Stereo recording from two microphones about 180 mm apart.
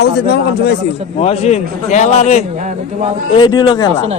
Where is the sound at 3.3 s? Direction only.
25° left (ahead or behind).